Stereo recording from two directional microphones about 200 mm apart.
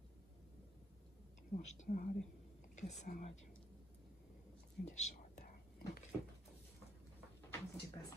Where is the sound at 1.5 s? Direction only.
40° left (ahead or behind).